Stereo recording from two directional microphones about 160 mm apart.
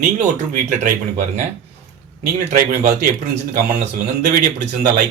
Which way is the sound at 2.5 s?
65° right (ahead or behind).